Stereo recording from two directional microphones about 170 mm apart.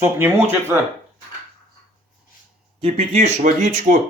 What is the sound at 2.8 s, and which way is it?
Speech, 40° right (ahead or behind).